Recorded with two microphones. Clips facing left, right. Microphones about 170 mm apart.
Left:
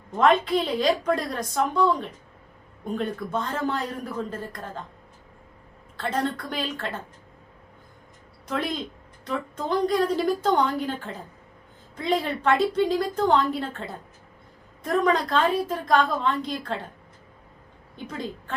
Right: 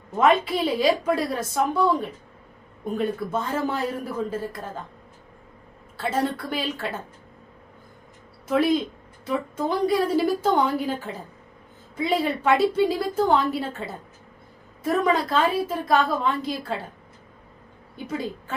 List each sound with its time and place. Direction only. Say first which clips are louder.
0.2 s a man's voice: even; 5° right (ahead or behind)
6.0 s a man's voice: right 2 dB; 5° right (ahead or behind)
8.4 s a woman's voice: right 8 dB; 5° right (ahead or behind)
17.9 s a woman's voice: right 4 dB; 5° right (ahead or behind)